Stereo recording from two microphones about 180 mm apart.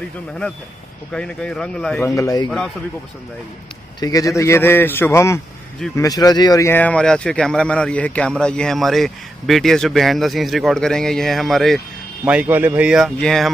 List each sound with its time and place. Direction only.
1.1 s speech: 5° left (ahead or behind)
2.1 s speech: 20° left (ahead or behind)
4.0 s a man's voice: 20° left (ahead or behind); by 13.5 s centre (ahead or behind)